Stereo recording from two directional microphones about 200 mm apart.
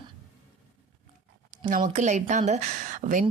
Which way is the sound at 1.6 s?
40° right (ahead or behind).